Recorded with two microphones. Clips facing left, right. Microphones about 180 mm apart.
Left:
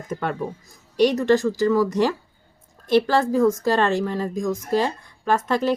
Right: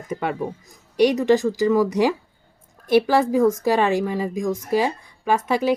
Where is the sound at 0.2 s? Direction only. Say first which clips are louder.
Right 2 dB; 10° right (ahead or behind).